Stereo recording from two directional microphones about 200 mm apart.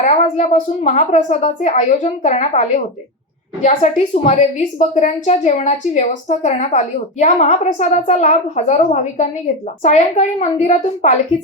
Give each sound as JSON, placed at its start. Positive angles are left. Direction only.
{"t": 0.0, "sound": "a woman's voice", "side_deg": 35}